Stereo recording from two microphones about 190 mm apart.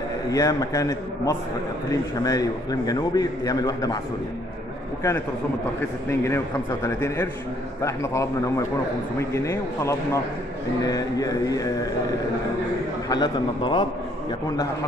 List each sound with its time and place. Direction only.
0.3 s a man's voice: 20° left (ahead or behind)
5.8 s a man's voice: 15° left (ahead or behind)
13.1 s a man's voice: 25° left (ahead or behind)